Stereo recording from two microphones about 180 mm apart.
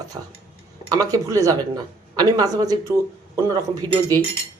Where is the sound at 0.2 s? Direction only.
20° right (ahead or behind).